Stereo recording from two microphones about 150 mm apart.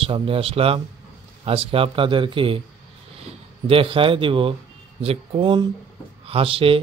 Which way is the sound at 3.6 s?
35° right (ahead or behind).